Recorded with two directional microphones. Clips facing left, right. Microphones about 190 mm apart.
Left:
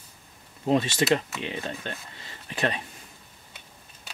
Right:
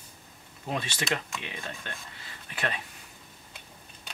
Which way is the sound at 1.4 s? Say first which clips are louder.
Left 7 dB; 30° left (ahead or behind).